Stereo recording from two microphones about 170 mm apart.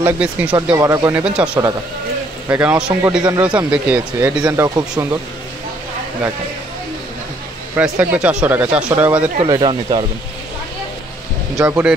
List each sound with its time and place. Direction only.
0.0 s speech: 10° right (ahead or behind)
0.7 s speech: 20° right (ahead or behind)
1.1 s speech: 5° right (ahead or behind)
4.4 s speech: 20° right (ahead or behind)
7.7 s speech: 10° right (ahead or behind)
9.5 s speech: 25° right (ahead or behind)
11.5 s speech: 15° right (ahead or behind)